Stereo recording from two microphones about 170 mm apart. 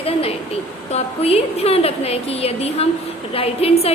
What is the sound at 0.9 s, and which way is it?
A woman's voice, 35° left (ahead or behind).